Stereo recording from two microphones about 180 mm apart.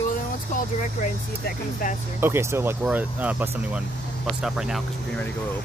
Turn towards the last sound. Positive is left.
turn(degrees=0)  # may be behind; listen again after turning